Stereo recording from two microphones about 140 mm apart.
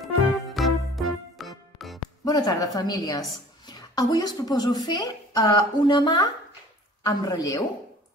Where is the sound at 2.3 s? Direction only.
30° left (ahead or behind).